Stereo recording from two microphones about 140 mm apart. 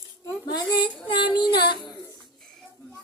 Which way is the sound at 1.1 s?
35° left (ahead or behind).